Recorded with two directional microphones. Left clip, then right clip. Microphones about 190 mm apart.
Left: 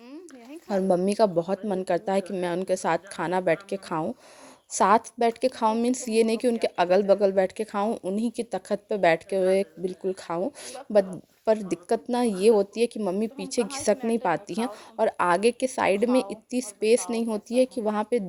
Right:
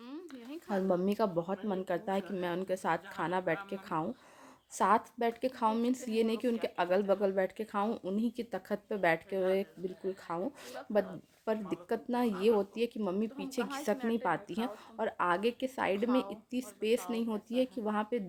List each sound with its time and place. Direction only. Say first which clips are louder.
0.7 s a woman's voice: left 8 dB; 25° left (ahead or behind)
7.9 s a woman's voice: left 7 dB; 20° left (ahead or behind)